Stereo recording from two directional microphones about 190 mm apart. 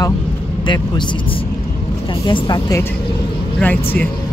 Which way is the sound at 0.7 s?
25° left (ahead or behind).